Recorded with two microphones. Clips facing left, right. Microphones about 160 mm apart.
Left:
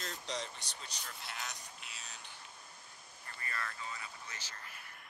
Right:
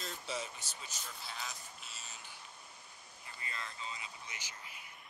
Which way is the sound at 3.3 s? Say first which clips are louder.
Left 3 dB; 15° right (ahead or behind).